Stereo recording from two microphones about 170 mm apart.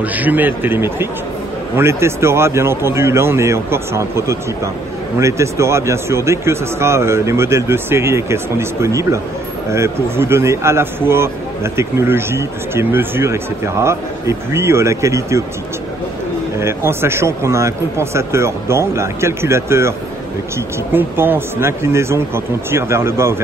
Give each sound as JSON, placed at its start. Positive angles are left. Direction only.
{"t": 0.0, "sound": "speech", "side_deg": -10}
{"t": 16.6, "sound": "speech", "side_deg": -15}
{"t": 20.9, "sound": "speech", "side_deg": -10}